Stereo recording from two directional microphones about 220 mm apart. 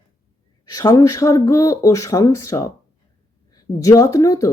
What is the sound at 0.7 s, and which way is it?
A man's voice, 15° left (ahead or behind).